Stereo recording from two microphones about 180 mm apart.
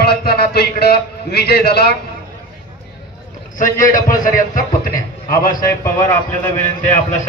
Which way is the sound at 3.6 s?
45° left (ahead or behind).